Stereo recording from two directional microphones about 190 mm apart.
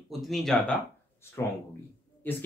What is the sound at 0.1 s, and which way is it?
Speech, centre (ahead or behind).